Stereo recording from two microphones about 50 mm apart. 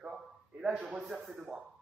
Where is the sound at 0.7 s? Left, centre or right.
Right.